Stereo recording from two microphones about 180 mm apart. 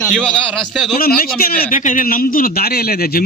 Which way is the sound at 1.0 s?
55° left (ahead or behind).